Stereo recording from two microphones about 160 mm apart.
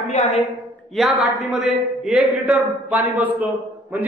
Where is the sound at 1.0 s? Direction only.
Centre (ahead or behind).